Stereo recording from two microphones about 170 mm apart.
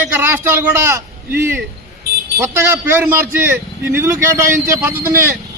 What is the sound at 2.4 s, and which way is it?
A man's voice, 15° right (ahead or behind).